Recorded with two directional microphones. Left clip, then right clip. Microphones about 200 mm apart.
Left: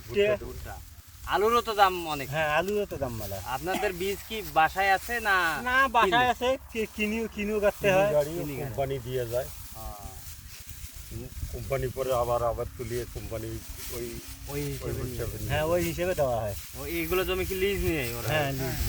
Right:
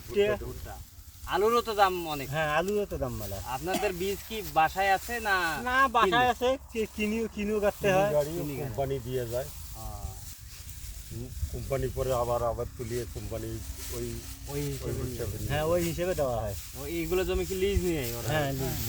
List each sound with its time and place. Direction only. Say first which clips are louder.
0.1 s speech: left 2 dB; 35° left (ahead or behind)
1.3 s speech: left 1 dB; 5° right (ahead or behind)
2.3 s speech: left 1 dB; 40° left (ahead or behind)
3.5 s speech: left 1 dB; centre (ahead or behind)
5.6 s speech: even; 40° left (ahead or behind)
8.8 s speech: left 1 dB; 10° left (ahead or behind)
11.7 s speech: left 2 dB; 10° left (ahead or behind)
12.8 s speech: left 1 dB; 50° left (ahead or behind)
14.8 s speech: left 1 dB; centre (ahead or behind)
15.4 s speech: left 1 dB; 45° left (ahead or behind)
16.8 s speech: left 1 dB; centre (ahead or behind)
18.3 s speech: left 2 dB; 50° left (ahead or behind)